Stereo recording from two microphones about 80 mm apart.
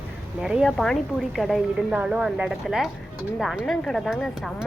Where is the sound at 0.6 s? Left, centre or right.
Centre.